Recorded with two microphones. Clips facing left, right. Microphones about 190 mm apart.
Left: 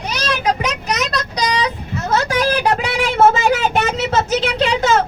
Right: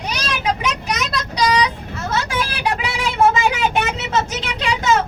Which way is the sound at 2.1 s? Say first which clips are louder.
Left 7 dB; 40° left (ahead or behind).